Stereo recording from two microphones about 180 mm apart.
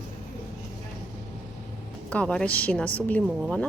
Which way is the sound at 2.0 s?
5° left (ahead or behind).